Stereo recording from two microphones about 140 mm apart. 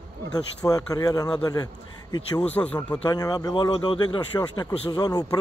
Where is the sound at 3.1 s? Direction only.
30° left (ahead or behind).